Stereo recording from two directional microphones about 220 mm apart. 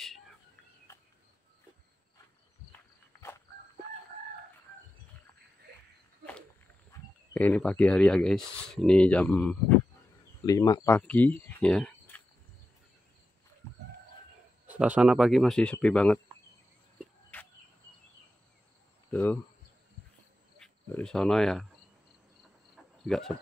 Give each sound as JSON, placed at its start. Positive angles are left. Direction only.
{"t": 5.7, "sound": "a sound", "side_deg": -45}
{"t": 6.9, "sound": "speech", "side_deg": 5}
{"t": 10.4, "sound": "speech", "side_deg": 15}
{"t": 14.7, "sound": "speech", "side_deg": -5}
{"t": 17.3, "sound": "cricket", "side_deg": 10}
{"t": 20.5, "sound": "speech", "side_deg": 5}
{"t": 23.0, "sound": "speech", "side_deg": 0}